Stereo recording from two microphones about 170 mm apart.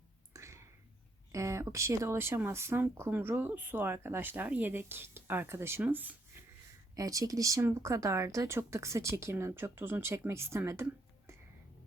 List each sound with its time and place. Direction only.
0.3 s a sound: 15° right (ahead or behind)
1.3 s speech: 20° right (ahead or behind)
6.9 s speech: 20° right (ahead or behind)